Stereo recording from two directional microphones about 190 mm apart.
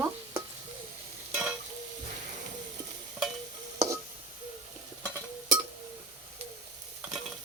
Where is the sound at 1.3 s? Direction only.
5° right (ahead or behind).